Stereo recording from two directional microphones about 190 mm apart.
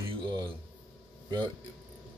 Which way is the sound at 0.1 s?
25° right (ahead or behind).